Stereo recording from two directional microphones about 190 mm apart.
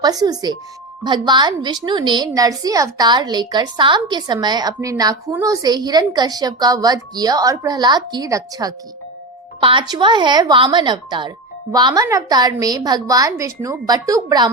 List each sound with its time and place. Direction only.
0.0 s a woman's voice: 20° right (ahead or behind)